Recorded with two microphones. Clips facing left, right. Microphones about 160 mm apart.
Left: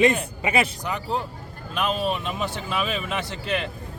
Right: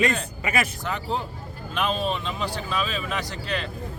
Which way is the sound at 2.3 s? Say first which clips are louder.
Left 1 dB; 20° left (ahead or behind).